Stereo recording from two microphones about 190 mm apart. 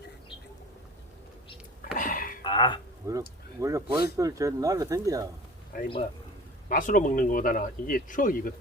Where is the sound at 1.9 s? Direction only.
45° left (ahead or behind).